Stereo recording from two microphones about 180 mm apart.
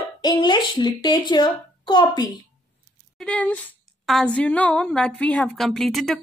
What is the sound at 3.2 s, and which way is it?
Speech, 5° left (ahead or behind).